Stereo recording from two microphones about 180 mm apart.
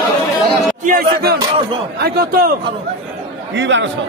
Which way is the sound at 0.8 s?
55° right (ahead or behind).